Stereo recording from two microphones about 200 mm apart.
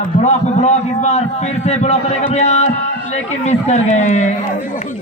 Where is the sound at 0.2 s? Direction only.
35° left (ahead or behind).